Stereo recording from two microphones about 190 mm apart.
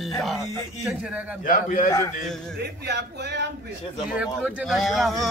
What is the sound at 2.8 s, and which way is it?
Speech, 60° right (ahead or behind).